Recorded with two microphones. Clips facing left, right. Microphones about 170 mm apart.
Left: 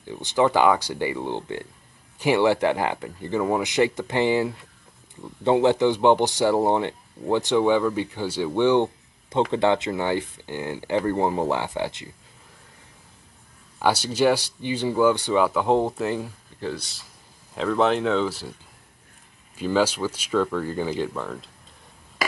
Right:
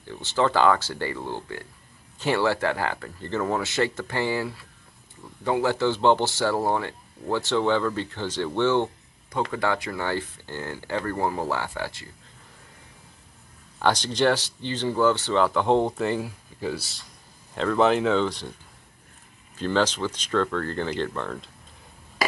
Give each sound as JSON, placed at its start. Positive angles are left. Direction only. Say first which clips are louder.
{"t": 0.0, "sound": "speech", "louder": "left 3 dB", "side_deg": 15}
{"t": 13.7, "sound": "speech", "louder": "left 1 dB", "side_deg": 10}
{"t": 16.3, "sound": "speech", "louder": "right 1 dB", "side_deg": -10}
{"t": 19.5, "sound": "speech", "louder": "left 2 dB", "side_deg": 10}